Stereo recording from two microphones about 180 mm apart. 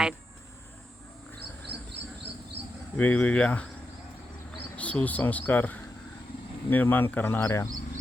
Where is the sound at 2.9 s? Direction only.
10° left (ahead or behind).